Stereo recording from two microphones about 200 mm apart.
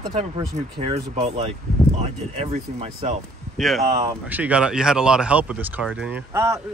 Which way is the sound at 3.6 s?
Centre (ahead or behind).